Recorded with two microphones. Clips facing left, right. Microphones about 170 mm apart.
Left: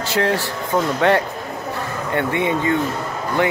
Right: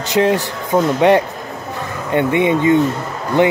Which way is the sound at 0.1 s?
20° right (ahead or behind).